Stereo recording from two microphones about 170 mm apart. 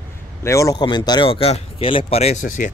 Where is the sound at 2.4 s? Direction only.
50° left (ahead or behind).